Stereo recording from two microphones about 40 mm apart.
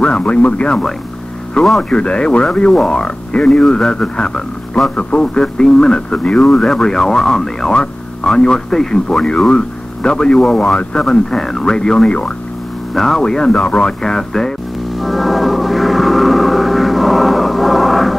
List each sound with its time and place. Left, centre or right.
0.0 s a man's voice: left
1.6 s speech: centre
1.9 s a man's voice: left
13.5 s a man's voice: left
14.0 s speech: centre
15.0 s gong: centre